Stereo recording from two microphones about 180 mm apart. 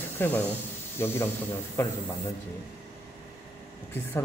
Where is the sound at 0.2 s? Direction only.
10° left (ahead or behind).